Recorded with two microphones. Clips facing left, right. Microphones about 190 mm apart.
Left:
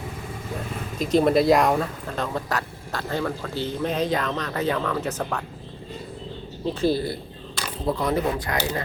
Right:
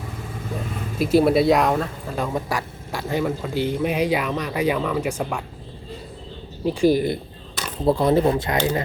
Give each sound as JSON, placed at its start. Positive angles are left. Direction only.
{"t": 0.9, "sound": "speech", "side_deg": -5}
{"t": 2.1, "sound": "a man's voice", "side_deg": -10}
{"t": 6.7, "sound": "a man's voice", "side_deg": -15}
{"t": 7.9, "sound": "speech", "side_deg": -30}